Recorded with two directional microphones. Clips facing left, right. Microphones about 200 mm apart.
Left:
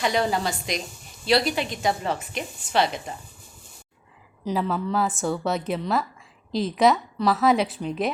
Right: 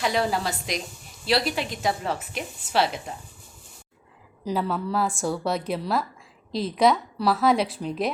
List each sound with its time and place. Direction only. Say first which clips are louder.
0.0 s a woman's voice: left 1 dB; centre (ahead or behind)
4.4 s a woman's voice: left 1 dB; centre (ahead or behind)